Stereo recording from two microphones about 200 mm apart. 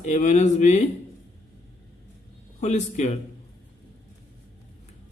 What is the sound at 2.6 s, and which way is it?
Speech, 35° left (ahead or behind).